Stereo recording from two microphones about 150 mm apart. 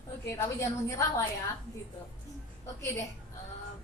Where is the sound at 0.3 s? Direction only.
20° left (ahead or behind).